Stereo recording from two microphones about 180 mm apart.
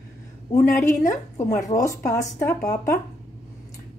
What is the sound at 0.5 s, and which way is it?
Speech, 15° left (ahead or behind).